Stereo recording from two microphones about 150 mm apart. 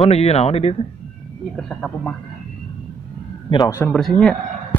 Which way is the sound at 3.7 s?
20° left (ahead or behind).